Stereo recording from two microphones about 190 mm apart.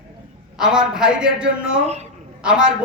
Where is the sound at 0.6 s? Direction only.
5° right (ahead or behind).